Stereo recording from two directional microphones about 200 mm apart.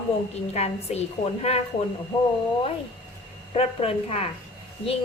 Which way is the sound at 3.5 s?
30° left (ahead or behind).